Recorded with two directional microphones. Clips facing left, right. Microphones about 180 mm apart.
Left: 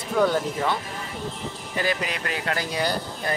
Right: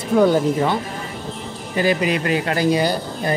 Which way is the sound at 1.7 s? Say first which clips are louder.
Right 9 dB; 5° right (ahead or behind).